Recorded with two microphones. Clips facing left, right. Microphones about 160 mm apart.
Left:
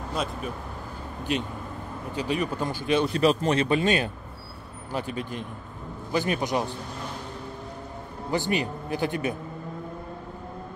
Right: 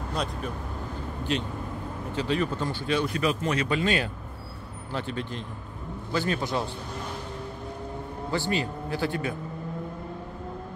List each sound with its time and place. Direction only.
1.3 s speech: 15° left (ahead or behind)
2.9 s speech: 25° left (ahead or behind)
8.3 s speech: 20° left (ahead or behind)